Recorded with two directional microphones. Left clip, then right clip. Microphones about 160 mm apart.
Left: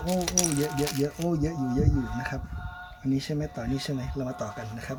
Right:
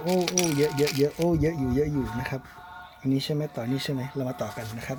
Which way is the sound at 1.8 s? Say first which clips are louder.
Right 3 dB; 5° right (ahead or behind).